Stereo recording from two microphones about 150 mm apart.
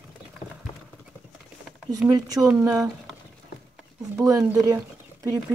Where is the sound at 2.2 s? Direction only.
25° right (ahead or behind).